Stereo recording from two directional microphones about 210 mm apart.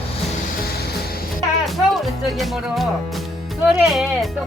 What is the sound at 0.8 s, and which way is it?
Music, 45° left (ahead or behind).